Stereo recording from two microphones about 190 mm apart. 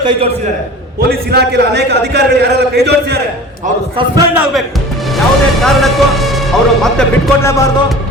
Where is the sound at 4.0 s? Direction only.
15° right (ahead or behind).